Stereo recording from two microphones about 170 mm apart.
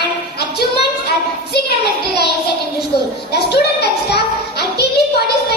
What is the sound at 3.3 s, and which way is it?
Child singing, 70° left (ahead or behind).